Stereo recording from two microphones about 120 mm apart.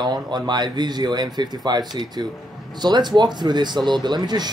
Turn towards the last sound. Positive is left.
turn(degrees=-35)  # may be behind; listen again after turning